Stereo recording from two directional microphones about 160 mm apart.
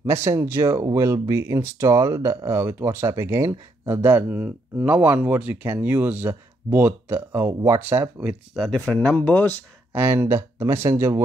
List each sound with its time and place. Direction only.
0.0 s speech: 15° right (ahead or behind)
8.6 s speech: 5° left (ahead or behind)
9.9 s speech: 15° right (ahead or behind)